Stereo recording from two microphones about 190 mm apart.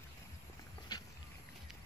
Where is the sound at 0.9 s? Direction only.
20° left (ahead or behind).